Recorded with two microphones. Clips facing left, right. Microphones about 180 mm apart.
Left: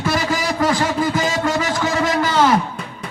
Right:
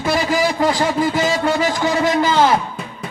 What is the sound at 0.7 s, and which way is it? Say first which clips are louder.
Speech: right 1 dB; 25° right (ahead or behind).